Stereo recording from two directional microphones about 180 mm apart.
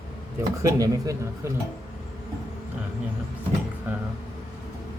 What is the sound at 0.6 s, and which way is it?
Speech, 20° right (ahead or behind).